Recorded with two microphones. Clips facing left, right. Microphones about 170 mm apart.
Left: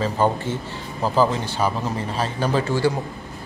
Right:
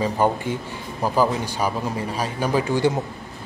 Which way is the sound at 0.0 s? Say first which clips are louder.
Even; 15° right (ahead or behind).